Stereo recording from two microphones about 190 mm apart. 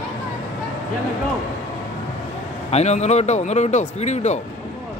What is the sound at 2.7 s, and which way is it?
Speech, 35° left (ahead or behind).